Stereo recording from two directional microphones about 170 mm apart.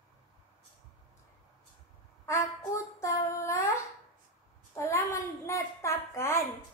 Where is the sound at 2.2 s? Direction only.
15° left (ahead or behind).